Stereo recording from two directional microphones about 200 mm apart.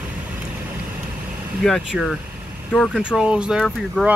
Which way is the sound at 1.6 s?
Centre (ahead or behind).